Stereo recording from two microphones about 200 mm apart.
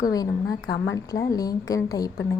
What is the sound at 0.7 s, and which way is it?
Speech, 55° left (ahead or behind).